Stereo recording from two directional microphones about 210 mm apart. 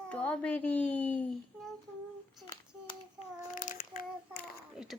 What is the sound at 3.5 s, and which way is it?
Child singing, 40° left (ahead or behind).